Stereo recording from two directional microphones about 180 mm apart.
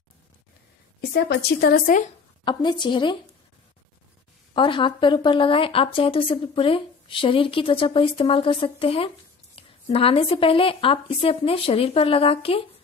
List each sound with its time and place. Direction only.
1.1 s a woman's voice: 65° left (ahead or behind)
2.4 s speech: 25° left (ahead or behind)
4.6 s a woman's voice: 25° left (ahead or behind)